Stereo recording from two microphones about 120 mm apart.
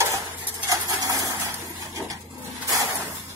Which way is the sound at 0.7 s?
30° right (ahead or behind).